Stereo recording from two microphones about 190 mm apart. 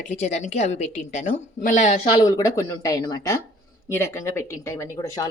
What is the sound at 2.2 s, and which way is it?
Speech, 15° left (ahead or behind).